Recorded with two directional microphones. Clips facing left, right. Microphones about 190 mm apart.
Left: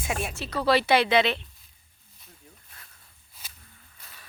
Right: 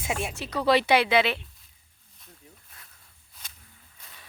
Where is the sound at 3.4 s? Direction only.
5° left (ahead or behind).